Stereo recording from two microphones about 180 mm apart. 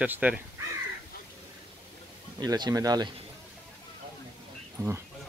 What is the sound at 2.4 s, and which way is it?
Speech, 20° right (ahead or behind).